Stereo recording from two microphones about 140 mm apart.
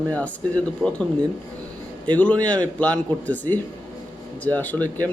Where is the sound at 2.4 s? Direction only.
10° left (ahead or behind).